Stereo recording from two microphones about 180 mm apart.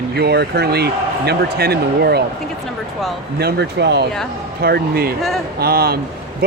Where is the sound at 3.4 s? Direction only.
65° right (ahead or behind).